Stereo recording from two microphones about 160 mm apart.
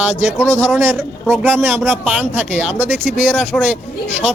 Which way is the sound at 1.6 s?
Centre (ahead or behind).